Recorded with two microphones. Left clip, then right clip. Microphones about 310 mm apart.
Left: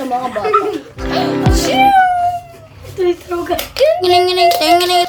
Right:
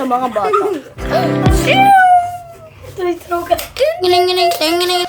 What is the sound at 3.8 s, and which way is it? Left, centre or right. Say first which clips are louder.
A woman's voice: left 3 dB; centre.